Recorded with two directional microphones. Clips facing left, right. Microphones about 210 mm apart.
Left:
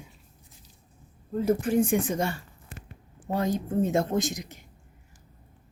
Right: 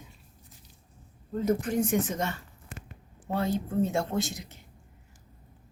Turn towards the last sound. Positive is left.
turn(degrees=15)  # may be behind; listen again after turning